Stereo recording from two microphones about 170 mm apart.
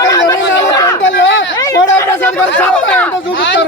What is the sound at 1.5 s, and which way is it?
Chatter, 15° left (ahead or behind).